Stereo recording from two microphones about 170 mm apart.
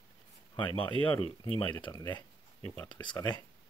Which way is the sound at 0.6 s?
30° left (ahead or behind).